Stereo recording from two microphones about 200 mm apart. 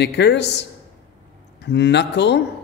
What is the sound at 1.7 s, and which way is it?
Speech, 55° left (ahead or behind).